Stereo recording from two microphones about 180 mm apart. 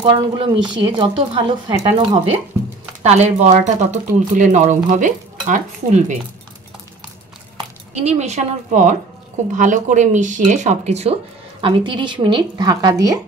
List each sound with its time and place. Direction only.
0.0 s speech: 30° right (ahead or behind)
7.5 s speech: 35° right (ahead or behind)
11.6 s speech: 25° right (ahead or behind)